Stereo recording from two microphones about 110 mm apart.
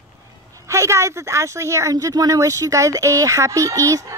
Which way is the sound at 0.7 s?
25° right (ahead or behind).